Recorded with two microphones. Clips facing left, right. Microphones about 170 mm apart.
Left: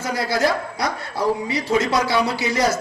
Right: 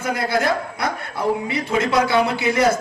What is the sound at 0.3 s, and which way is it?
A man's voice, 55° right (ahead or behind).